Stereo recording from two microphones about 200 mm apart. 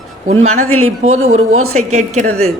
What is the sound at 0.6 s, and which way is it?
A man's voice, 90° right.